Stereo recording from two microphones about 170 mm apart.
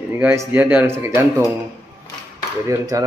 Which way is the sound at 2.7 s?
20° right (ahead or behind).